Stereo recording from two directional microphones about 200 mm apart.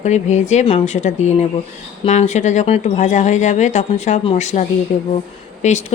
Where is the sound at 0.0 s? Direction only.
35° left (ahead or behind).